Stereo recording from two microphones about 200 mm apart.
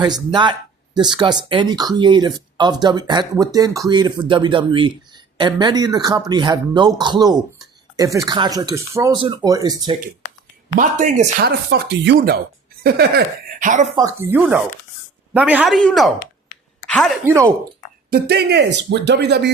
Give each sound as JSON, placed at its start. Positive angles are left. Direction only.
{"t": 0.0, "sound": "speech", "side_deg": -20}
{"t": 10.8, "sound": "speech", "side_deg": -40}
{"t": 13.9, "sound": "speech", "side_deg": -15}
{"t": 16.8, "sound": "a sound", "side_deg": 5}
{"t": 17.2, "sound": "speech", "side_deg": -15}
{"t": 18.1, "sound": "speech", "side_deg": -55}